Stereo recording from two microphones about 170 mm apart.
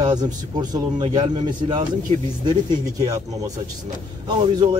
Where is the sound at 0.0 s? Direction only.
25° right (ahead or behind).